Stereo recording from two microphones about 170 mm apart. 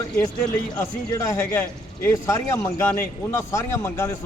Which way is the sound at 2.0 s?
15° left (ahead or behind).